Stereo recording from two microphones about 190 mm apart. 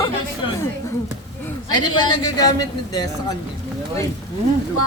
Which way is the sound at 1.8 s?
25° left (ahead or behind).